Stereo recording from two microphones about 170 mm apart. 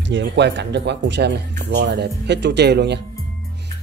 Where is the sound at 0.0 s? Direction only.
90° right.